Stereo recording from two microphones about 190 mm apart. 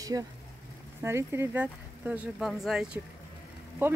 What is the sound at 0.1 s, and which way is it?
Speech, 15° right (ahead or behind).